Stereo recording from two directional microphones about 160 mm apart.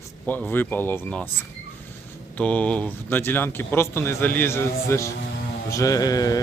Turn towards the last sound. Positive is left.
turn(degrees=20)  # may be behind; listen again after turning